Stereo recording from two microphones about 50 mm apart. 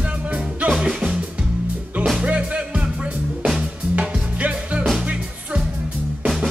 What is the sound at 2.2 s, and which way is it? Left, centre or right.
Music, right.